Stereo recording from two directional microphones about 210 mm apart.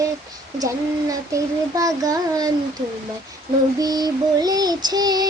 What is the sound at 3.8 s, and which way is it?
Child singing, 20° right (ahead or behind).